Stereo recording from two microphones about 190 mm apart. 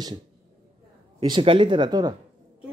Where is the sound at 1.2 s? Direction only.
25° right (ahead or behind).